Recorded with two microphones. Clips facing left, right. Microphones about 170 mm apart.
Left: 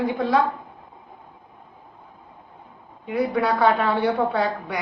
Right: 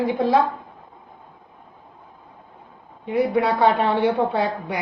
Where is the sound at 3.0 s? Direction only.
25° right (ahead or behind).